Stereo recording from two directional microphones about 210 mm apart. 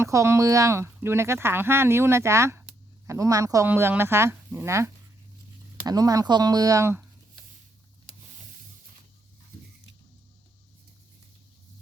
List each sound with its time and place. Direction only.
0.0 s speech: 15° right (ahead or behind)